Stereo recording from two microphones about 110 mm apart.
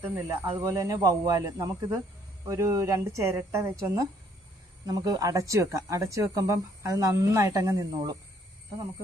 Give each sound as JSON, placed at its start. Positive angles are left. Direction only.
{"t": 0.0, "sound": "speech", "side_deg": -20}